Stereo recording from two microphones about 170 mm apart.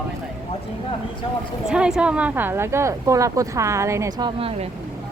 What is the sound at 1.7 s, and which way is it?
A woman's voice, 5° right (ahead or behind).